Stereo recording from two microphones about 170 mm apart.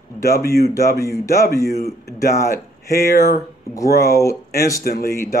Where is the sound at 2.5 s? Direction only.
65° left (ahead or behind).